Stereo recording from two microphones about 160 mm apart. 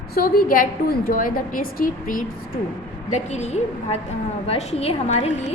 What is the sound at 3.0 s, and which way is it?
A woman's voice, 50° left (ahead or behind).